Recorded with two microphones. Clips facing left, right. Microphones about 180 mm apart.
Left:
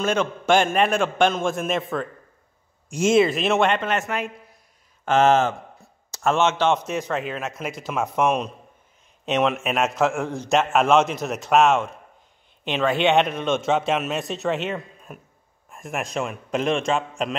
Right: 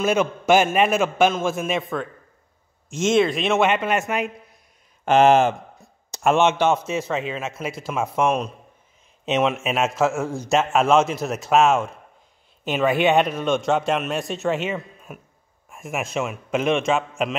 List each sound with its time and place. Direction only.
0.0 s a man's voice: 10° right (ahead or behind)
6.9 s a man's voice: centre (ahead or behind)